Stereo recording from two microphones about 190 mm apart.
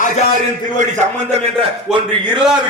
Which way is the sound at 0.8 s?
40° right (ahead or behind).